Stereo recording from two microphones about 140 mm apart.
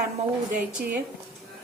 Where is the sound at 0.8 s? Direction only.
10° right (ahead or behind).